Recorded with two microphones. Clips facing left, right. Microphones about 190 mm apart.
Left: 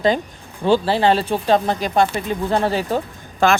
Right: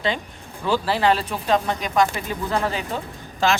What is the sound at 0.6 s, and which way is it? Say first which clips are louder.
Speech: left 5 dB; 30° left (ahead or behind).